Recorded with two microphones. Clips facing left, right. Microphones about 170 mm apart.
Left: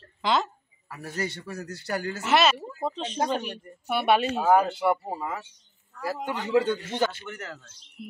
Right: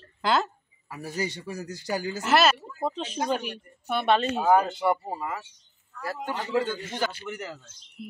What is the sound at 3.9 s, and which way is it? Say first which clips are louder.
Speech: left 1 dB; 10° left (ahead or behind).